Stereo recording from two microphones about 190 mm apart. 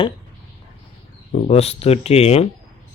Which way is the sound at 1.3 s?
35° left (ahead or behind).